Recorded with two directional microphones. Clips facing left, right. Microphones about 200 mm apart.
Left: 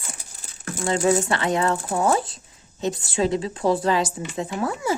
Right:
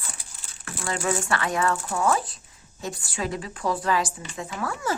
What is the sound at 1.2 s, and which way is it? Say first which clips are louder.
Speech: left 3 dB; 25° left (ahead or behind).